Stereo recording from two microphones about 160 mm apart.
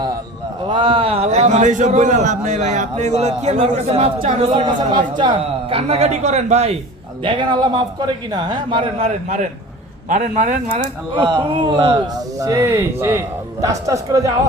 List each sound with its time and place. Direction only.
0.7 s a man's voice: 30° right (ahead or behind)
7.3 s a man's voice: 30° right (ahead or behind)
9.0 s a man's voice: 45° right (ahead or behind)
11.1 s a man's voice: 30° right (ahead or behind)
12.4 s a man's voice: 20° right (ahead or behind)